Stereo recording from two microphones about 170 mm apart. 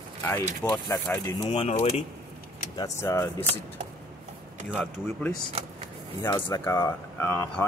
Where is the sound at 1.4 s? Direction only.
40° left (ahead or behind).